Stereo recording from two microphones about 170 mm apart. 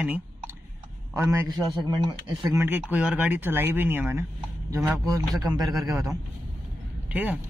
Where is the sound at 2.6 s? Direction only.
10° right (ahead or behind).